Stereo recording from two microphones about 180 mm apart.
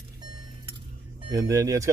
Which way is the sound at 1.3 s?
20° right (ahead or behind).